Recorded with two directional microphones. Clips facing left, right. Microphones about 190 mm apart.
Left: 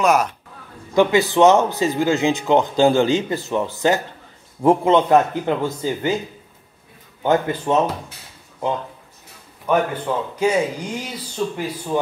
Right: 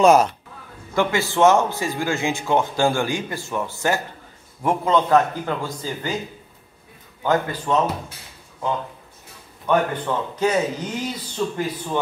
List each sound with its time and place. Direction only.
0.0 s speech: 30° right (ahead or behind)
0.9 s speech: 20° left (ahead or behind)
7.2 s speech: 20° left (ahead or behind)
9.7 s a man's voice: 10° left (ahead or behind)